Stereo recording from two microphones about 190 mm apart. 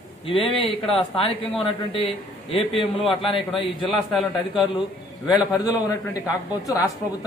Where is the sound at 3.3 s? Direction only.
30° left (ahead or behind).